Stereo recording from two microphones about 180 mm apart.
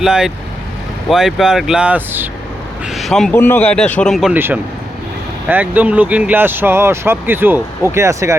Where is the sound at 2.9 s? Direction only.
Centre (ahead or behind).